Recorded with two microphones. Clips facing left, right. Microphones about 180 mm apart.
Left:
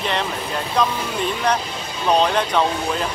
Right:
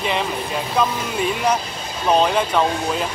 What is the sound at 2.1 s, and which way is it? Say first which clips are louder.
Speech: right 1 dB; 5° right (ahead or behind).